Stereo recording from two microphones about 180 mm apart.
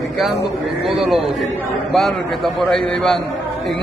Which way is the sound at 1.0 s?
Centre (ahead or behind).